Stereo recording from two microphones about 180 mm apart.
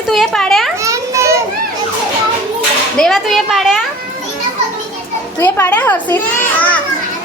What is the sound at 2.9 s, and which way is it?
Speech, centre (ahead or behind).